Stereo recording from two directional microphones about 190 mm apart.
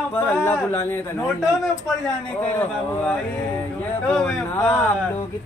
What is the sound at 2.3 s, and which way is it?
A man's voice, 5° left (ahead or behind).